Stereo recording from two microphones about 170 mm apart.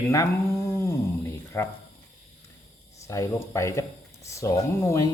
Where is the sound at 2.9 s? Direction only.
20° left (ahead or behind).